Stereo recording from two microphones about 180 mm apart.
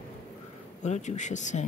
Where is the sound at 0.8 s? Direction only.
40° left (ahead or behind).